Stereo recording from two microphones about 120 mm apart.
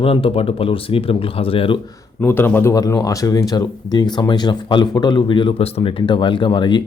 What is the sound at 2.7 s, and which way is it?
Speech, 30° left (ahead or behind).